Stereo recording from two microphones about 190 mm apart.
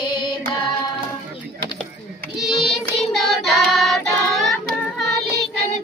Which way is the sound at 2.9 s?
Centre (ahead or behind).